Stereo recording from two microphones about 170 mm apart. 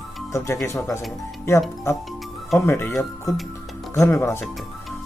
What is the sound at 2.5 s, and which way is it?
Speech, 15° left (ahead or behind).